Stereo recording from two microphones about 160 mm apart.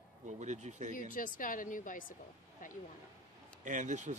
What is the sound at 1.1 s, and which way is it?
Speech, 55° left (ahead or behind).